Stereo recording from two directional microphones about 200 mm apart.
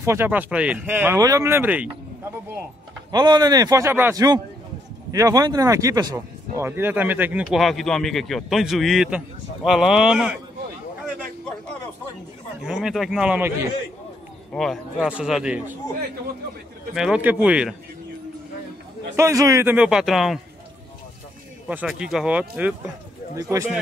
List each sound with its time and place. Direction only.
0.0 s speech: 10° right (ahead or behind)
3.1 s a man's voice: 20° right (ahead or behind); by 10.4 s 5° right (ahead or behind)
12.6 s speech: centre (ahead or behind)
14.5 s speech: 5° left (ahead or behind)
16.9 s speech: 5° right (ahead or behind)
19.1 s speech: 15° right (ahead or behind)
21.6 s speech: 5° right (ahead or behind)